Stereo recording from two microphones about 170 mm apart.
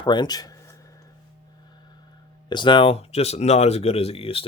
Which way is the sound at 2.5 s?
25° left (ahead or behind).